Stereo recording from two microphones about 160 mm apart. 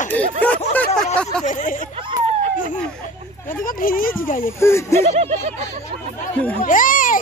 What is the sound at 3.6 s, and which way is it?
Speech, 60° left (ahead or behind).